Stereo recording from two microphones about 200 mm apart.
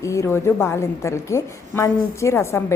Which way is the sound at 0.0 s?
15° left (ahead or behind).